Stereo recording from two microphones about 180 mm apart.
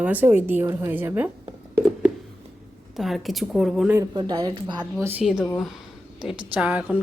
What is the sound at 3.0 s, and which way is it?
Speech, centre (ahead or behind).